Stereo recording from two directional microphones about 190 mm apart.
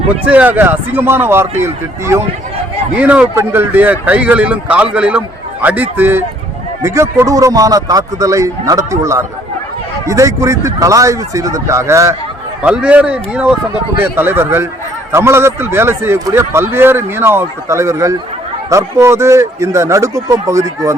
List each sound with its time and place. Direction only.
0.3 s a man's voice: 10° right (ahead or behind)